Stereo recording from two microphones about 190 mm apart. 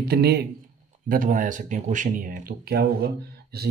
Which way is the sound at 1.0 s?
45° right (ahead or behind).